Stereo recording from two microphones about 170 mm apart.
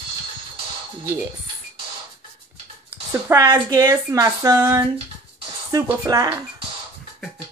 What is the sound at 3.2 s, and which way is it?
Speech, 20° right (ahead or behind).